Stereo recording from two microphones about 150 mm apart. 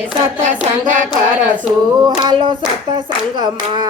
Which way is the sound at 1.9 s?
25° right (ahead or behind).